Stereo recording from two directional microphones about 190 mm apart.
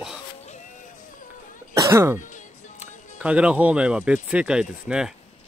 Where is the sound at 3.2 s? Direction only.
5° right (ahead or behind).